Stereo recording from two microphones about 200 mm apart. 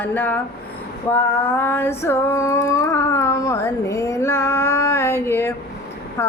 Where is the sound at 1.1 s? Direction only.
10° left (ahead or behind).